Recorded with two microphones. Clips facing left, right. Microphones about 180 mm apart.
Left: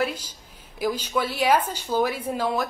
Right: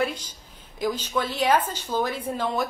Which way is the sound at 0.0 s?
5° left (ahead or behind).